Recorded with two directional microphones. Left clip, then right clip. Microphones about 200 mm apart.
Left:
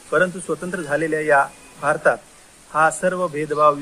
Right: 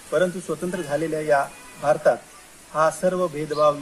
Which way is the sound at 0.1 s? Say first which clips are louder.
Left 3 dB; 15° left (ahead or behind).